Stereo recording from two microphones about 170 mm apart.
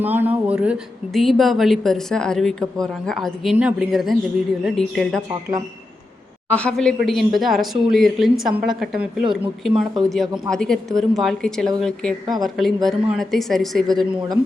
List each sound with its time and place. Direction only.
0.0 s speech: 10° right (ahead or behind)
6.5 s speech: 5° left (ahead or behind)